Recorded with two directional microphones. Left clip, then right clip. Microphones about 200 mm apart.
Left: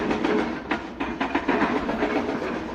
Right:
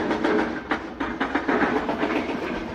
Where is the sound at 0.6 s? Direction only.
50° left (ahead or behind).